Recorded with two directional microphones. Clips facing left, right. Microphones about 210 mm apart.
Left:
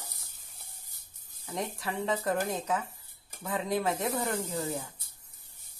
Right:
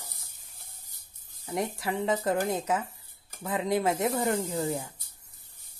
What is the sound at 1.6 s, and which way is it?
Speech, 25° right (ahead or behind).